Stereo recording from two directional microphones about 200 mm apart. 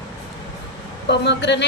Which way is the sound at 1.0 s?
60° left (ahead or behind).